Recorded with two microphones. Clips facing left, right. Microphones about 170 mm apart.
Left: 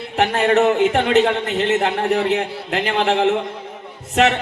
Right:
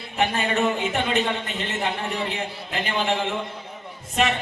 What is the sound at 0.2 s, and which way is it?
Speech, 70° left (ahead or behind).